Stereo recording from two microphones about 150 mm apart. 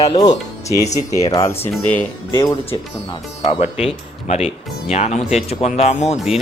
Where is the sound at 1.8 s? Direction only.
10° left (ahead or behind).